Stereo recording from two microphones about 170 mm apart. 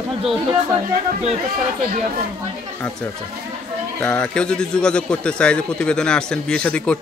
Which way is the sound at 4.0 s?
5° left (ahead or behind).